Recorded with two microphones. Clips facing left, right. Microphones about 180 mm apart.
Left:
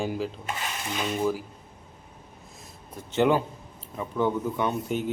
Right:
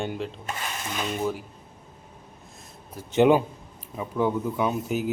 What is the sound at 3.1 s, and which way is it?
Speech, 15° right (ahead or behind).